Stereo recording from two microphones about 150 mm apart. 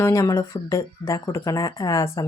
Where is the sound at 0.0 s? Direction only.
20° left (ahead or behind).